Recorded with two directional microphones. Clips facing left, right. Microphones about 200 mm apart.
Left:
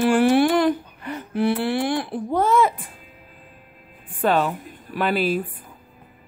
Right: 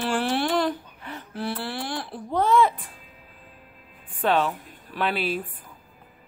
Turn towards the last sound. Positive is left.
turn(degrees=5)  # may be behind; listen again after turning